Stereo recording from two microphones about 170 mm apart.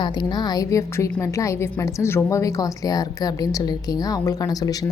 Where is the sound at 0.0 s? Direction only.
25° left (ahead or behind).